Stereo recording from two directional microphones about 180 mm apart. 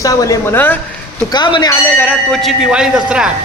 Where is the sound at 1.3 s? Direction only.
25° left (ahead or behind).